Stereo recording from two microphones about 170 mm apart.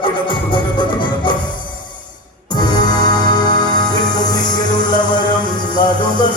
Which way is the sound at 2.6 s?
25° left (ahead or behind).